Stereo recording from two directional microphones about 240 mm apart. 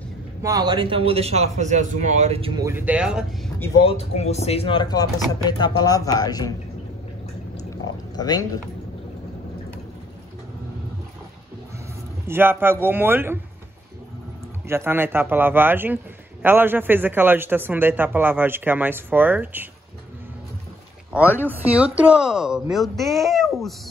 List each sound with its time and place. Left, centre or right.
0.4 s a man's voice: centre
3.5 s speech: centre
3.8 s speech: left
8.2 s speech: centre
12.3 s a man's voice: centre
14.7 s a man's voice: centre
21.4 s a woman's voice: centre